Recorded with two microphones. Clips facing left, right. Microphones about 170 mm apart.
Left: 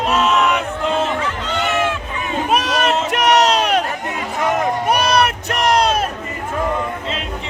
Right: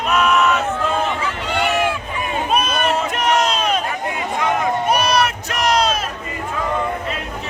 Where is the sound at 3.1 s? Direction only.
80° left.